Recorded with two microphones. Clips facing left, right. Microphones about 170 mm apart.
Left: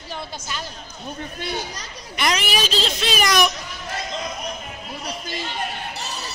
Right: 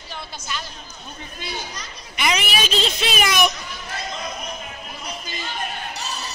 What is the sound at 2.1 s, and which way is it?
A child's voice, 5° right (ahead or behind).